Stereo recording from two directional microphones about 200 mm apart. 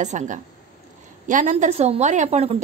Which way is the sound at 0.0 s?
35° right (ahead or behind).